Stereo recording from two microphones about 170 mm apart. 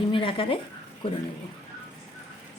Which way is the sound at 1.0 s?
30° left (ahead or behind).